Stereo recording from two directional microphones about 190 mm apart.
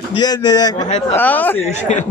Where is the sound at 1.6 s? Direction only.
40° left (ahead or behind).